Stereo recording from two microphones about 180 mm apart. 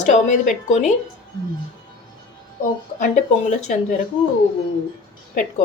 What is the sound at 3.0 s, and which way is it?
Speech, 45° left (ahead or behind).